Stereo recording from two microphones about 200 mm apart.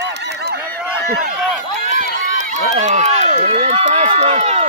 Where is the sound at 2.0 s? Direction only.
35° right (ahead or behind).